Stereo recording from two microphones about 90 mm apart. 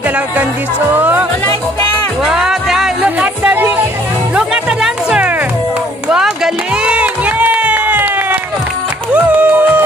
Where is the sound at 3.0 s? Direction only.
20° right (ahead or behind).